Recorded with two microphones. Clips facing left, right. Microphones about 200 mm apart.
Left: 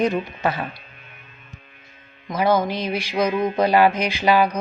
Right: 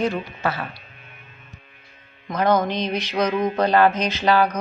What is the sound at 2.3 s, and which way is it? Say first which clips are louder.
Speech: even; 5° left (ahead or behind).